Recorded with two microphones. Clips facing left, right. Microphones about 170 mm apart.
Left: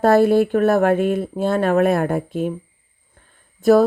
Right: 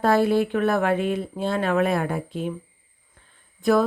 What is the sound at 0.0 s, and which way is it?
Speech, 45° left (ahead or behind).